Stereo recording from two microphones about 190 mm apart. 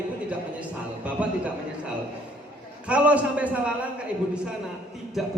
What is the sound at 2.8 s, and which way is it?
Speech, 5° right (ahead or behind).